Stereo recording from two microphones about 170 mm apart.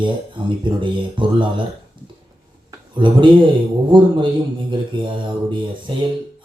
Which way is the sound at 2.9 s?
30° right (ahead or behind).